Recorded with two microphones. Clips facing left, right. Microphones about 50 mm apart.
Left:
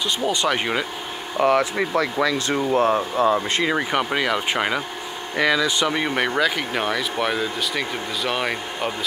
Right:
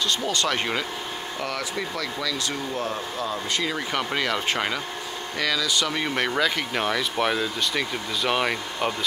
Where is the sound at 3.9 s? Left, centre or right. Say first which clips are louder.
Left 4 dB; centre.